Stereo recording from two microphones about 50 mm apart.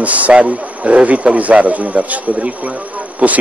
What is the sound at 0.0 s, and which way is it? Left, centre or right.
A man's voice, right.